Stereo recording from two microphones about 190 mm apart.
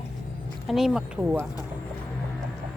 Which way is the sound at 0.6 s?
Centre (ahead or behind).